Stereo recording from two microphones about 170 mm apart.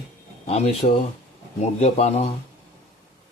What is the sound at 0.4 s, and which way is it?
A man's voice, 40° left (ahead or behind).